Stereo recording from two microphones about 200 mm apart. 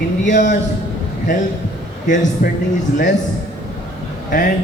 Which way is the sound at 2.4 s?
45° left (ahead or behind).